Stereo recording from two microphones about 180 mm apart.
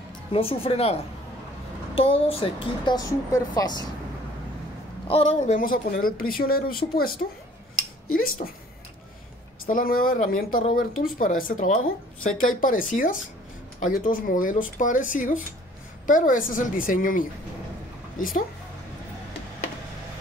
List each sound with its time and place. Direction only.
0.3 s speech: 30° left (ahead or behind)
2.0 s a woman's voice: 30° left (ahead or behind)
5.0 s speech: 30° left (ahead or behind)
5.6 s speech: 50° left (ahead or behind)
8.4 s speech: 55° left (ahead or behind)
9.7 s speech: 50° left (ahead or behind)